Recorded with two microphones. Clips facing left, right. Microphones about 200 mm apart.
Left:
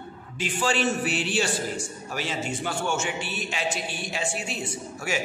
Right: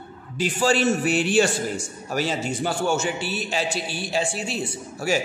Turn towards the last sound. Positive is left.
turn(degrees=-35)  # may be behind; listen again after turning